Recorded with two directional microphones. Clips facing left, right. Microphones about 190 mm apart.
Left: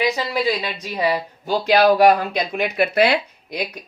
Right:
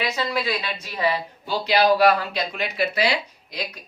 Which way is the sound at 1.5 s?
50° left (ahead or behind).